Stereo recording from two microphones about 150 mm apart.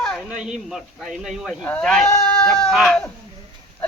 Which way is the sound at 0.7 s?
5° right (ahead or behind).